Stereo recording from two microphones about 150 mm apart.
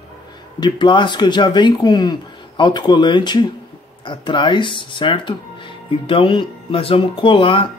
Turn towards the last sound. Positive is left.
turn(degrees=35)  # may be behind; listen again after turning